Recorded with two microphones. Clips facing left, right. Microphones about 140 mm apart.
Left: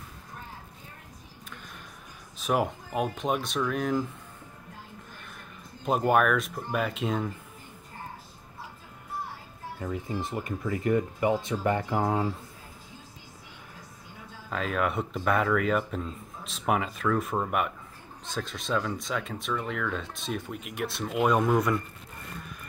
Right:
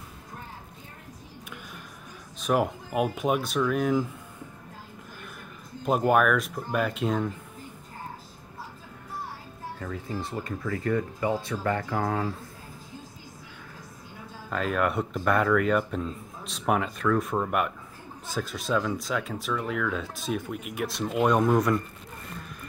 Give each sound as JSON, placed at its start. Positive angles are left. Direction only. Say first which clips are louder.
{"t": 2.4, "sound": "speech", "louder": "right 2 dB", "side_deg": 0}
{"t": 5.9, "sound": "speech", "louder": "right 1 dB", "side_deg": 0}
{"t": 9.8, "sound": "speech", "louder": "left 2 dB", "side_deg": 15}
{"t": 14.5, "sound": "speech", "louder": "right 2 dB", "side_deg": 0}